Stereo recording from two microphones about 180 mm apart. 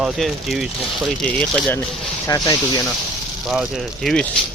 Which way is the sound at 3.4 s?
Centre (ahead or behind).